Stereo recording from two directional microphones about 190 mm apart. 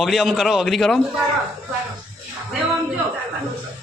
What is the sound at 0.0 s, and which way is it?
A man's voice, centre (ahead or behind).